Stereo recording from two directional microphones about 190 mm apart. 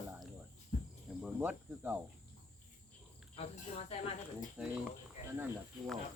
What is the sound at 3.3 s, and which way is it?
Speech, 35° left (ahead or behind).